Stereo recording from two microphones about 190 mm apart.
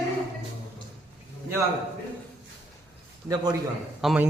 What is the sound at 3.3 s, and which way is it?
Speech, 20° right (ahead or behind).